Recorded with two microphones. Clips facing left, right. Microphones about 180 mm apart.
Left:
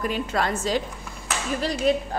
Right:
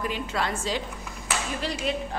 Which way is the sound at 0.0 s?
45° left (ahead or behind).